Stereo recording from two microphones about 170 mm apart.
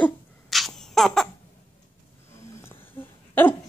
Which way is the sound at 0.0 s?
Centre (ahead or behind).